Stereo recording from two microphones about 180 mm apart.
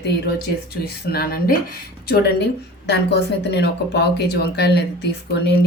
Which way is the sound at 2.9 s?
65° left (ahead or behind).